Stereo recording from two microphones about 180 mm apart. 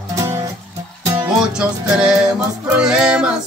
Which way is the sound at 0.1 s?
20° right (ahead or behind).